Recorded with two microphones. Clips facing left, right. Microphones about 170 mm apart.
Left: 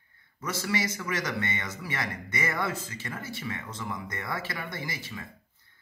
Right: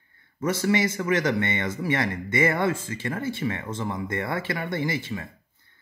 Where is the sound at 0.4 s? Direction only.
50° right (ahead or behind).